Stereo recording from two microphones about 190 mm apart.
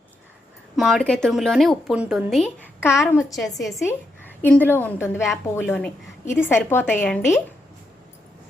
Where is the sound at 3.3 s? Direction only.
20° left (ahead or behind).